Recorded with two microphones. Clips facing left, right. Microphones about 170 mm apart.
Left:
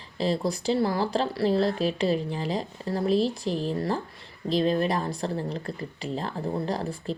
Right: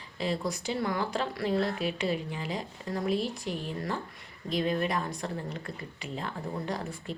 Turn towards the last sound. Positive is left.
turn(degrees=35)  # may be behind; listen again after turning